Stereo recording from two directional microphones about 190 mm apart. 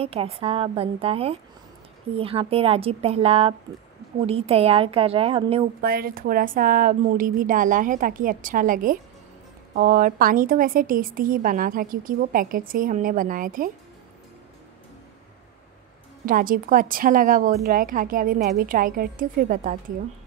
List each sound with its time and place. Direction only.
0.0 s speech: 30° right (ahead or behind)
5.8 s a woman's voice: 50° right (ahead or behind)
16.3 s a woman's voice: 45° right (ahead or behind)